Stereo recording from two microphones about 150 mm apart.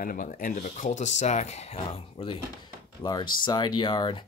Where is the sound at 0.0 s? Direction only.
65° left (ahead or behind).